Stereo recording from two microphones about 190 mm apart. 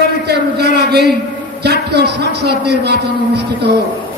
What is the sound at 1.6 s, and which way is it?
A man's voice, 60° right (ahead or behind).